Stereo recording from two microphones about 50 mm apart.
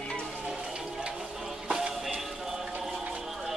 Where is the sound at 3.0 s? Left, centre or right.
Centre.